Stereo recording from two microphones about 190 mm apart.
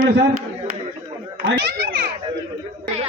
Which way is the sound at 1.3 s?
60° right (ahead or behind).